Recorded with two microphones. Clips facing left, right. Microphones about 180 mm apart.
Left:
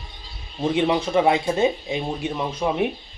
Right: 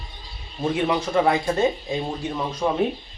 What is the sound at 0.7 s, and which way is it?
Speech, 20° left (ahead or behind).